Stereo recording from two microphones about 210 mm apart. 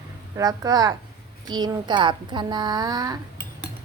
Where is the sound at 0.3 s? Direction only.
15° right (ahead or behind).